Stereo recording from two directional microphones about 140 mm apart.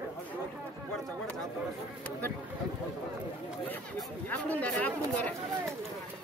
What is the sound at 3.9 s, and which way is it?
Speech, 10° left (ahead or behind).